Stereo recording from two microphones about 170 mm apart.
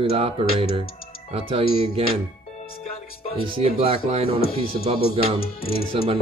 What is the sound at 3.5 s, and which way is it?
Speech, 35° right (ahead or behind).